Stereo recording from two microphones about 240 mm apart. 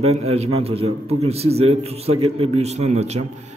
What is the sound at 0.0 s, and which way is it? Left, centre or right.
A man's voice, right.